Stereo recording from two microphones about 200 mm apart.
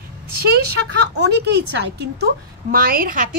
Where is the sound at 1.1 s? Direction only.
55° right (ahead or behind).